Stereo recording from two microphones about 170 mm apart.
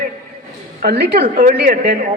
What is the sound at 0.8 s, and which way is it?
Speech, 75° right (ahead or behind).